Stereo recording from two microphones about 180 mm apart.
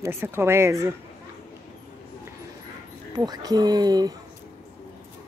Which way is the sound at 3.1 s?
20° right (ahead or behind).